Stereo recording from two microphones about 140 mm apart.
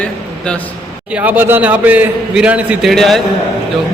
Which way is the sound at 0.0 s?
10° left (ahead or behind).